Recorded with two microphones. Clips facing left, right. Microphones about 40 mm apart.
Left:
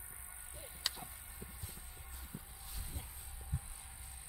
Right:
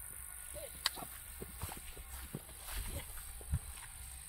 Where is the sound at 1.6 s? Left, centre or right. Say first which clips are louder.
Right 4 dB; right.